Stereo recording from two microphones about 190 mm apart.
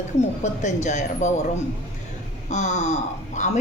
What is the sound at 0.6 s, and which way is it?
Speech, 40° left (ahead or behind).